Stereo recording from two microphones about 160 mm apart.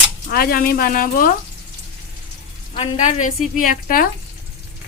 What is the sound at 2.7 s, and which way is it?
Speech, 45° left (ahead or behind).